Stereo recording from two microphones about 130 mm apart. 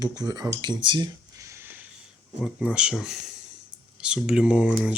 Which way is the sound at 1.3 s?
20° right (ahead or behind).